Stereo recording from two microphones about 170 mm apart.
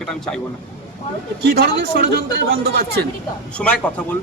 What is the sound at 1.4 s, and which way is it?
Speech, 80° right.